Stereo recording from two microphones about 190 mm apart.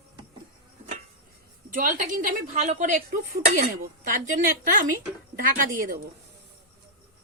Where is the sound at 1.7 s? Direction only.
45° right (ahead or behind).